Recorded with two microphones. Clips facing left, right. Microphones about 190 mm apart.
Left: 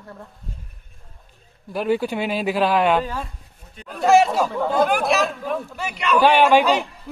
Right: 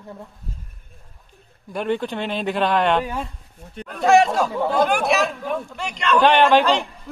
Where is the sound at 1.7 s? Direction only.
5° left (ahead or behind).